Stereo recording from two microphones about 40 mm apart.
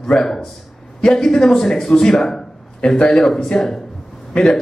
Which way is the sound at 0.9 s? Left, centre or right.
Centre.